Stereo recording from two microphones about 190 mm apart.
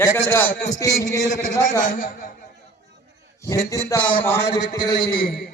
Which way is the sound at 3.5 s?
15° left (ahead or behind).